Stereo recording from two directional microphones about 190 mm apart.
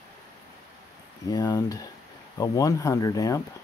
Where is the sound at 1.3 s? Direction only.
20° left (ahead or behind).